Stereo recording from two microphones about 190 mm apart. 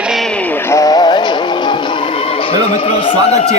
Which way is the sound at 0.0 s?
Centre (ahead or behind).